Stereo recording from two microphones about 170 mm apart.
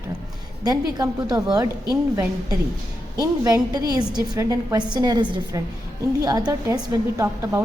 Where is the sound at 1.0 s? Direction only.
20° right (ahead or behind).